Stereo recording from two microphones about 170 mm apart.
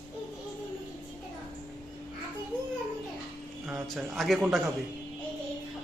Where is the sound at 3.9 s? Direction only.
Centre (ahead or behind).